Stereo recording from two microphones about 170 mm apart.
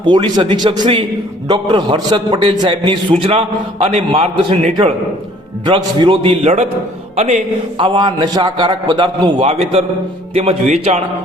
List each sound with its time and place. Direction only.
0.0 s a man's voice: 25° right (ahead or behind)
5.6 s a man's voice: 30° right (ahead or behind)
7.9 s a man's voice: 25° right (ahead or behind)